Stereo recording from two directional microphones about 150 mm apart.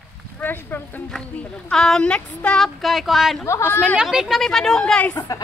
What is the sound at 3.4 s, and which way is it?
Speech, 15° left (ahead or behind).